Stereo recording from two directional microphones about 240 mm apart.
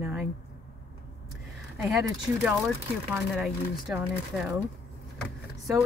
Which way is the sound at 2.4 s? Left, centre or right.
Centre.